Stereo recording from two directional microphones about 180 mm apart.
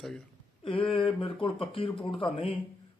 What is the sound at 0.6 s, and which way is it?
A man's voice, 30° left (ahead or behind).